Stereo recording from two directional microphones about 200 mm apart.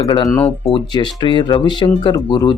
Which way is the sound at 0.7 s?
25° left (ahead or behind).